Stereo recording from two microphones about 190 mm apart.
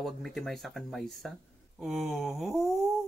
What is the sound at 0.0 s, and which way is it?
Speech, centre (ahead or behind).